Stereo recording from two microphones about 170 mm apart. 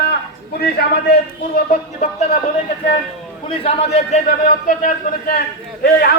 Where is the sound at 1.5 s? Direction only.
45° left (ahead or behind).